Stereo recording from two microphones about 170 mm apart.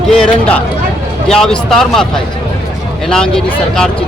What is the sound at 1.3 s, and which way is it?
Speech, 5° left (ahead or behind).